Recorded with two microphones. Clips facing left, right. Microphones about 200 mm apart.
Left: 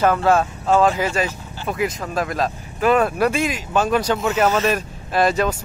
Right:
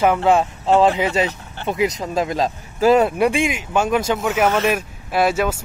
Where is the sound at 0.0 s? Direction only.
15° right (ahead or behind).